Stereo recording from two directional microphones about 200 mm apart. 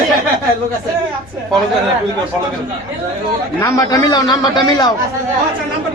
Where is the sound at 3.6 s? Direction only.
15° left (ahead or behind).